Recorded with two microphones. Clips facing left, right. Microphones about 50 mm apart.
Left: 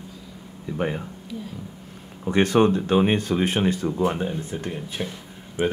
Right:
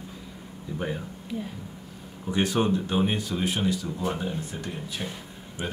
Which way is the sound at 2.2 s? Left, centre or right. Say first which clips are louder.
Left 6 dB; left.